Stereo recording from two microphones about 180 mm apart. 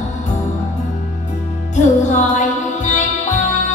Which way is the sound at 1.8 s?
40° left (ahead or behind).